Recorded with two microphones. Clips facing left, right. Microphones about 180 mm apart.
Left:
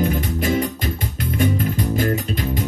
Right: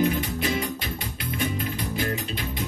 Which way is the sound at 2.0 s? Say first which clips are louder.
Left 7 dB; 45° left (ahead or behind).